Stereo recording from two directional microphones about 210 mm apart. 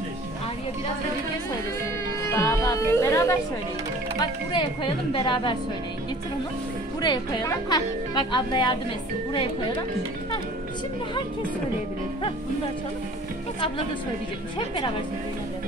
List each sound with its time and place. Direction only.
2.3 s a woman's voice: 15° left (ahead or behind)
7.0 s a woman's voice: 20° left (ahead or behind)